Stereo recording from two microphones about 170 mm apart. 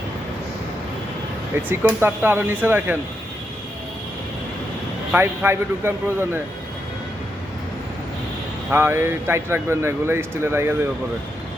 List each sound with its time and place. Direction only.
1.6 s speech: 15° right (ahead or behind)
5.1 s speech: 10° right (ahead or behind)
8.7 s speech: 15° right (ahead or behind)